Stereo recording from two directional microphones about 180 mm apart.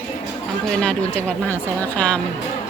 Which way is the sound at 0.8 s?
5° left (ahead or behind).